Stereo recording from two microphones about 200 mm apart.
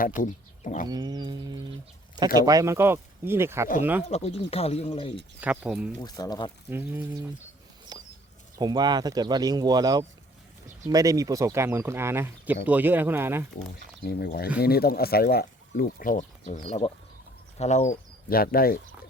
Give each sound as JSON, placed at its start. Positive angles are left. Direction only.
{"t": 0.2, "sound": "speech", "side_deg": 40}
{"t": 0.9, "sound": "speech", "side_deg": -20}
{"t": 4.1, "sound": "speech", "side_deg": 30}
{"t": 5.4, "sound": "speech", "side_deg": -5}
{"t": 6.0, "sound": "speech", "side_deg": 20}
{"t": 6.7, "sound": "speech", "side_deg": -10}
{"t": 7.9, "sound": "a sound", "side_deg": -20}
{"t": 8.5, "sound": "speech", "side_deg": -20}
{"t": 14.0, "sound": "speech", "side_deg": 50}